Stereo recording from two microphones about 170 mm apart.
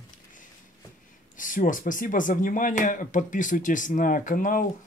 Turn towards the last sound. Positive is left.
turn(degrees=50)  # may be behind; listen again after turning